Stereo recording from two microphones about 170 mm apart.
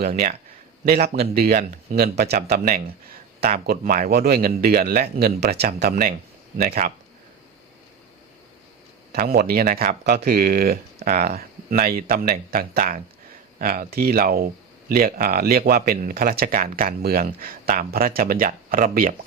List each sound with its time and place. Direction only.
0.0 s speech: 60° right (ahead or behind)
9.1 s speech: 60° right (ahead or behind)